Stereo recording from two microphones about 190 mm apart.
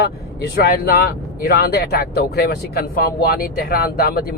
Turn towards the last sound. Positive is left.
turn(degrees=55)  # may be behind; listen again after turning